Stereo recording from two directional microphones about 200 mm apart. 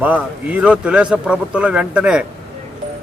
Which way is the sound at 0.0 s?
10° right (ahead or behind).